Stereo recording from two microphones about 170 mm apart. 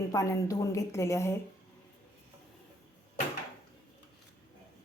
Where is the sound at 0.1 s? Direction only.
20° left (ahead or behind).